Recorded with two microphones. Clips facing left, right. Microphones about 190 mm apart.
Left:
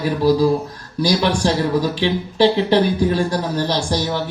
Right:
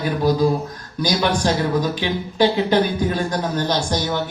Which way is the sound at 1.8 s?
30° left (ahead or behind).